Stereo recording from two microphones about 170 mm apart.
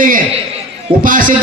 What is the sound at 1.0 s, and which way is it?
Speech, 55° right (ahead or behind).